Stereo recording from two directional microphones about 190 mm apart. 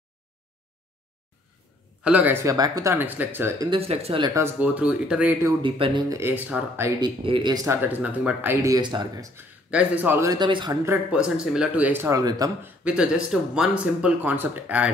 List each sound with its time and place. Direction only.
2.0 s speech: 10° right (ahead or behind)
3.7 s speech: 30° right (ahead or behind)
4.3 s speech: 10° right (ahead or behind)
5.6 s speech: 25° right (ahead or behind); by 6.9 s 10° right (ahead or behind)
7.0 s speech: 25° right (ahead or behind)
9.7 s speech: 5° right (ahead or behind); by 10.8 s 25° right (ahead or behind)
11.2 s speech: 5° right (ahead or behind)
12.8 s speech: 5° right (ahead or behind)